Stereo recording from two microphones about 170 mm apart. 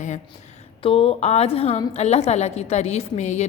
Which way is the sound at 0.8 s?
35° left (ahead or behind).